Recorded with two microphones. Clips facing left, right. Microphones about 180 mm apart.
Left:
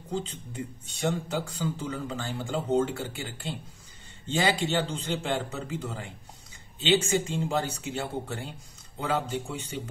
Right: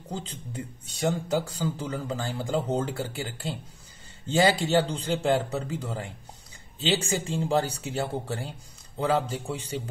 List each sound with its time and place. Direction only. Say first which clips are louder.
0.1 s a man's voice: left 2 dB; 40° right (ahead or behind)